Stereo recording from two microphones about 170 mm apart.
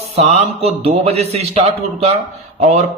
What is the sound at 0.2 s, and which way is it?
Speech, 40° right (ahead or behind).